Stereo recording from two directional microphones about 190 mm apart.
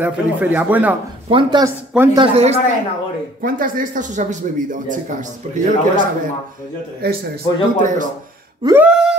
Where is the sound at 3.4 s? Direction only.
45° right (ahead or behind).